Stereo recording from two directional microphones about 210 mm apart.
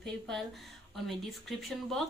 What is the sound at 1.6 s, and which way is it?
Speech, centre (ahead or behind).